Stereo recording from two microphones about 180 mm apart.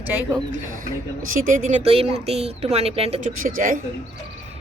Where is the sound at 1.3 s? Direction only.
50° right (ahead or behind).